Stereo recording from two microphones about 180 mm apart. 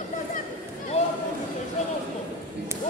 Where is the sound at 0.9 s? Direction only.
35° left (ahead or behind).